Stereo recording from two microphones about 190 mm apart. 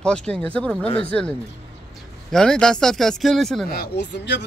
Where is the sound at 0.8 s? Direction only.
30° left (ahead or behind).